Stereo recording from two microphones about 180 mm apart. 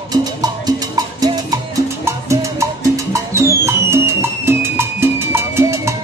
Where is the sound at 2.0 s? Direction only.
15° right (ahead or behind).